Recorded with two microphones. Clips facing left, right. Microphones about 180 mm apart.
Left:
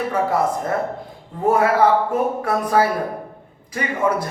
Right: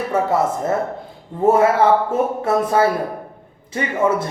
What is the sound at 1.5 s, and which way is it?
A man's voice, 25° right (ahead or behind).